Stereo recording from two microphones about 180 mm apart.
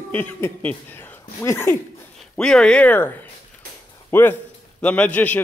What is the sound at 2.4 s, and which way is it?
A man's voice, 5° left (ahead or behind).